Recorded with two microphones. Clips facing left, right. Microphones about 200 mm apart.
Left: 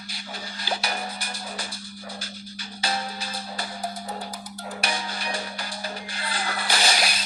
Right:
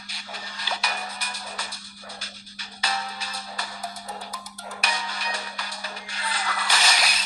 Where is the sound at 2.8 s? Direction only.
30° left (ahead or behind).